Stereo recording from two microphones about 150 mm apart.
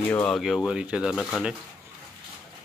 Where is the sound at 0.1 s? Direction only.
10° left (ahead or behind).